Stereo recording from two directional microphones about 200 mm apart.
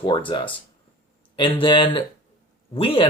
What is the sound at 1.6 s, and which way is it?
Speech, 25° left (ahead or behind).